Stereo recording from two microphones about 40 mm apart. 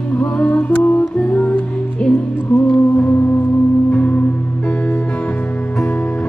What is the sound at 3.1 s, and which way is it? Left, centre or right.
Singing bowl, left.